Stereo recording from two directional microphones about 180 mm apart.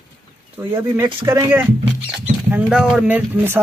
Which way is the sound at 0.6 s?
15° right (ahead or behind).